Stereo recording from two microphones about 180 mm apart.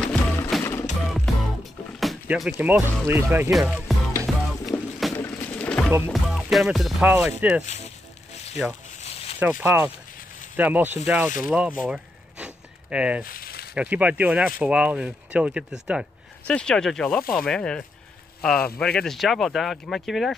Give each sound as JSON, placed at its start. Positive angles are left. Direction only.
{"t": 0.0, "sound": "music", "side_deg": 5}
{"t": 2.5, "sound": "speech", "side_deg": -15}
{"t": 4.3, "sound": "music", "side_deg": 0}
{"t": 5.1, "sound": "a sound", "side_deg": 10}
{"t": 5.9, "sound": "speech", "side_deg": -15}
{"t": 6.1, "sound": "speech", "side_deg": 0}
{"t": 7.6, "sound": "speech", "side_deg": 40}
{"t": 9.0, "sound": "zipper", "side_deg": 35}
{"t": 9.4, "sound": "speech", "side_deg": -10}
{"t": 11.9, "sound": "a sound", "side_deg": -5}
{"t": 13.2, "sound": "a sound", "side_deg": 55}
{"t": 13.7, "sound": "speech", "side_deg": -5}